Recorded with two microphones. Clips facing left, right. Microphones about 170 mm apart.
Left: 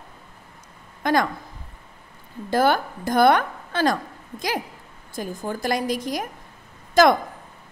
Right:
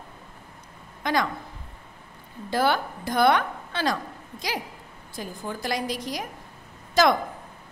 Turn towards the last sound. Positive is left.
turn(degrees=50)  # may be behind; listen again after turning